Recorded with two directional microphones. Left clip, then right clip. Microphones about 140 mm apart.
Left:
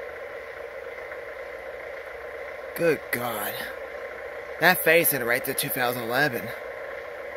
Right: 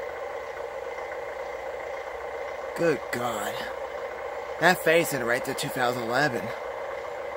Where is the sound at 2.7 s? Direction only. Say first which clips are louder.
Left 2 dB; 15° left (ahead or behind).